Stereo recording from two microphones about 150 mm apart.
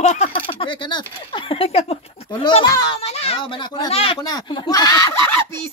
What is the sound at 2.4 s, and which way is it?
Speech, 25° left (ahead or behind).